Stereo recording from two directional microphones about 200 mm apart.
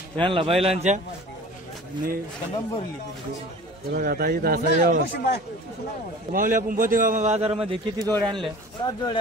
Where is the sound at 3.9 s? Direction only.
50° right (ahead or behind).